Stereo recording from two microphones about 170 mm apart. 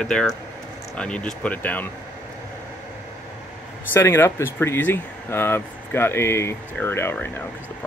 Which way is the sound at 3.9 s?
15° left (ahead or behind).